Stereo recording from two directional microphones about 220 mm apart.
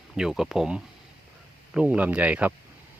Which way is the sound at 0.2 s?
Centre (ahead or behind).